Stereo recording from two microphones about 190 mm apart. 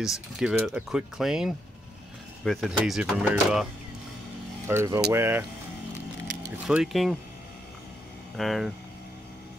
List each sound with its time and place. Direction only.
0.0 s speech: centre (ahead or behind)
4.6 s speech: 15° right (ahead or behind)
6.7 s speech: centre (ahead or behind)
8.4 s speech: centre (ahead or behind)